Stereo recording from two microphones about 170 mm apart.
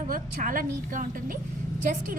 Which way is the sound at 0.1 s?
55° right (ahead or behind).